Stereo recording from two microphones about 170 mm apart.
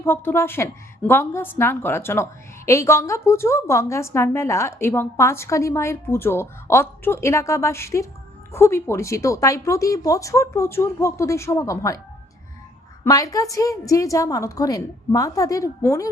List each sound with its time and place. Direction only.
0.0 s a woman's voice: 15° left (ahead or behind)
13.1 s a woman's voice: 20° left (ahead or behind)